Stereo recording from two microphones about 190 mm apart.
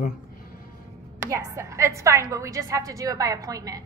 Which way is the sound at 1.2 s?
15° right (ahead or behind).